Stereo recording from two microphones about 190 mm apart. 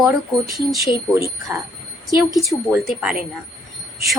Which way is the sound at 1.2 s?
15° right (ahead or behind).